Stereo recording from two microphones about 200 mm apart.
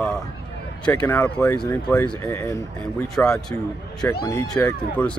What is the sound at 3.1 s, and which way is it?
Speech, 5° left (ahead or behind).